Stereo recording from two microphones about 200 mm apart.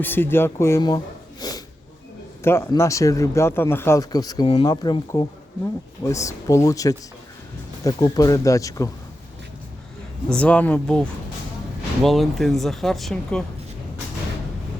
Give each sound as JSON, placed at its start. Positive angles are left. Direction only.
{"t": 0.0, "sound": "speech", "side_deg": 10}
{"t": 10.2, "sound": "speech", "side_deg": 5}